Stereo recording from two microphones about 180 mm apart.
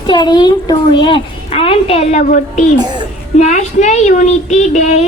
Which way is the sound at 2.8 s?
25° right (ahead or behind).